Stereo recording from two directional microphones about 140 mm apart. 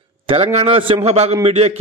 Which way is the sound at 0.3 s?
45° right (ahead or behind).